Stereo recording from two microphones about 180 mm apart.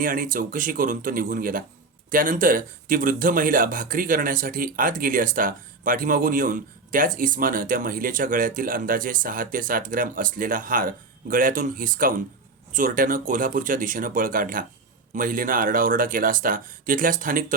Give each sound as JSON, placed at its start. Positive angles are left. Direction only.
{"t": 0.0, "sound": "speech", "side_deg": -50}